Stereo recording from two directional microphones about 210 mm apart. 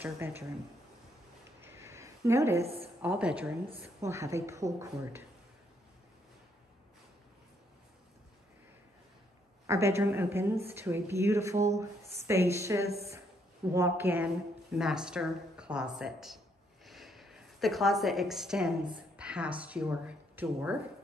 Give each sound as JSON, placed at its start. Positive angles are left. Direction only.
{"t": 0.0, "sound": "speech", "side_deg": -10}
{"t": 1.6, "sound": "a sound", "side_deg": -10}
{"t": 2.6, "sound": "a woman's voice", "side_deg": -30}
{"t": 3.0, "sound": "a woman's voice", "side_deg": -5}
{"t": 9.7, "sound": "a woman's voice", "side_deg": -15}
{"t": 16.8, "sound": "a sound", "side_deg": 0}
{"t": 19.1, "sound": "speech", "side_deg": -5}